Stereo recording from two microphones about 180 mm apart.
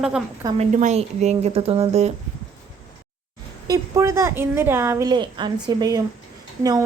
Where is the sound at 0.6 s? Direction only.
40° right (ahead or behind).